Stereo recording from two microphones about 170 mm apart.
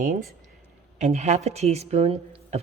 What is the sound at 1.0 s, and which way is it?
A woman's voice, 40° right (ahead or behind).